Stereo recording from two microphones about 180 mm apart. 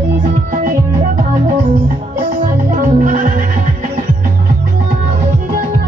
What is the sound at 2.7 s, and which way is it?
Music, 50° right (ahead or behind).